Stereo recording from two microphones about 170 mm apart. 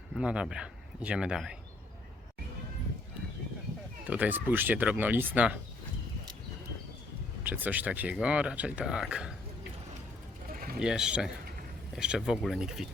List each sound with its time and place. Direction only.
0.1 s speech: 5° right (ahead or behind)
4.0 s speech: 10° right (ahead or behind)
7.4 s speech: 10° right (ahead or behind)
10.5 s a sound: 55° right (ahead or behind)
10.8 s speech: 5° right (ahead or behind)